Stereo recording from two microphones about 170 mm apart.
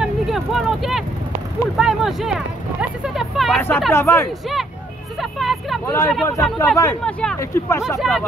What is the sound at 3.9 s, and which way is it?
Speech, 15° left (ahead or behind).